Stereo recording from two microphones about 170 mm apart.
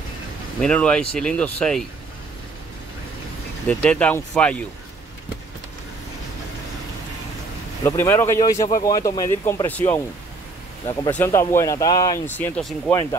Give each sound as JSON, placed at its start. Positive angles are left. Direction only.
{"t": 0.6, "sound": "speech", "side_deg": 5}
{"t": 3.6, "sound": "speech", "side_deg": 5}
{"t": 7.8, "sound": "speech", "side_deg": 15}
{"t": 12.4, "sound": "speech", "side_deg": 5}